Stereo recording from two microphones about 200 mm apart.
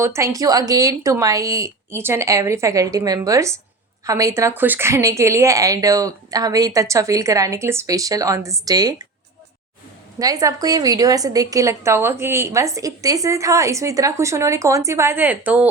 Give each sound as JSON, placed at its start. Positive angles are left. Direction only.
{"t": 0.0, "sound": "a woman's voice", "side_deg": -15}
{"t": 10.2, "sound": "a woman's voice", "side_deg": -20}